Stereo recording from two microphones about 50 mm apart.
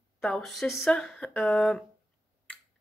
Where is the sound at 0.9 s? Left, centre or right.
Left.